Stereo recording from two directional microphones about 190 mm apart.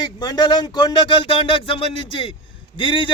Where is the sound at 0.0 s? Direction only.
20° left (ahead or behind).